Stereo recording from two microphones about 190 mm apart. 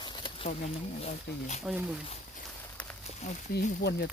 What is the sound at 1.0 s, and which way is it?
Speech, 35° left (ahead or behind).